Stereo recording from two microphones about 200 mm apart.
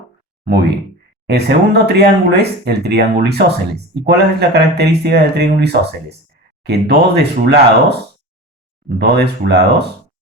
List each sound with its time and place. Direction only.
1.3 s speech: 55° right (ahead or behind)
9.0 s speech: 55° right (ahead or behind)